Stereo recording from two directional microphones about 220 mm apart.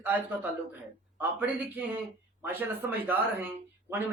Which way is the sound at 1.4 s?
10° right (ahead or behind).